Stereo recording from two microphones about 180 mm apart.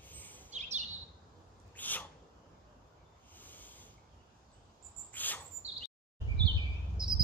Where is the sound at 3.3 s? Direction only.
10° left (ahead or behind).